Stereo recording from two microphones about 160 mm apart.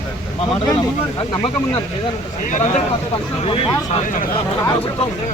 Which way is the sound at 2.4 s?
50° left (ahead or behind).